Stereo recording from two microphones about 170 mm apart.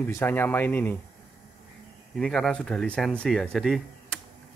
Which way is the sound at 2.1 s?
5° left (ahead or behind).